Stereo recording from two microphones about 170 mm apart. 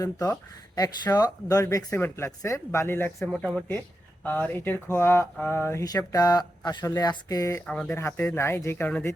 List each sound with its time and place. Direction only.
0.0 s speech: 20° left (ahead or behind)
3.2 s speech: centre (ahead or behind)